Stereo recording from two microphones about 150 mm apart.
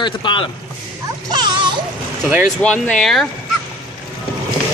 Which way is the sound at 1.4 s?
30° right (ahead or behind).